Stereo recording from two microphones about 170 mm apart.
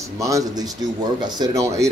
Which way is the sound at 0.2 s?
20° right (ahead or behind).